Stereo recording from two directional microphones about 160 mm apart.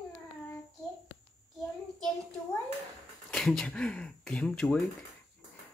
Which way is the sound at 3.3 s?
5° left (ahead or behind).